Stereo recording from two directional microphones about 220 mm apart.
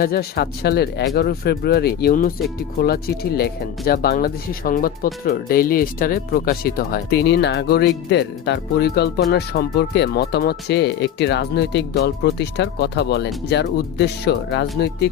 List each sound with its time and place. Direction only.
0.0 s speech: 45° left (ahead or behind)